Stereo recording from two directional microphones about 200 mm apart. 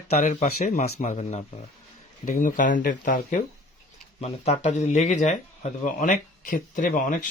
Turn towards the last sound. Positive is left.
turn(degrees=40)  # may be behind; listen again after turning